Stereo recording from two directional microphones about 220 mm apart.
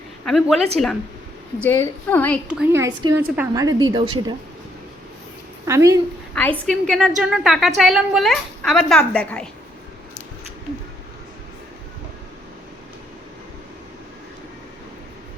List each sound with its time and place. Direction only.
0.3 s a woman's voice: centre (ahead or behind)
2.5 s a woman's voice: 10° right (ahead or behind)
5.6 s a woman's voice: 15° right (ahead or behind)
6.3 s a woman's voice: 5° left (ahead or behind)